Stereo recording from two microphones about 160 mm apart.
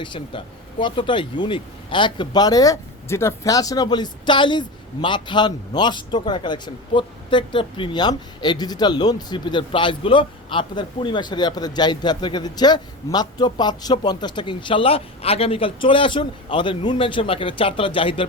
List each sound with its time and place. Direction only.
0.0 s speech: 30° left (ahead or behind)